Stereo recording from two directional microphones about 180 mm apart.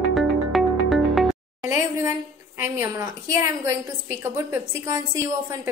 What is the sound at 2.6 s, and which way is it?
A woman's voice, 15° right (ahead or behind).